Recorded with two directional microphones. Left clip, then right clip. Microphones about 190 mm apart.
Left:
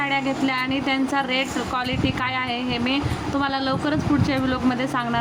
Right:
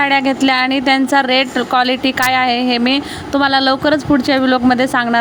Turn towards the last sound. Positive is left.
turn(degrees=-35)  # may be behind; listen again after turning